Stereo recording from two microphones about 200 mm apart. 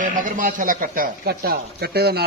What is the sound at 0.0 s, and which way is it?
Speech, 40° right (ahead or behind).